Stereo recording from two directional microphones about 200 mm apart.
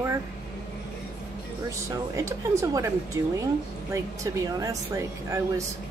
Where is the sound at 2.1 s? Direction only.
15° right (ahead or behind).